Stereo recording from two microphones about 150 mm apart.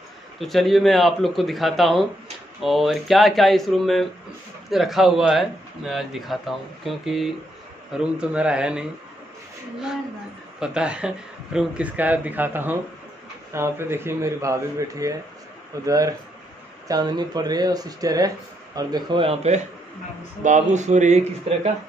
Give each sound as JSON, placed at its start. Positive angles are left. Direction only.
{"t": 0.4, "sound": "speech", "side_deg": 0}
{"t": 10.6, "sound": "speech", "side_deg": -5}
{"t": 20.4, "sound": "speech", "side_deg": -50}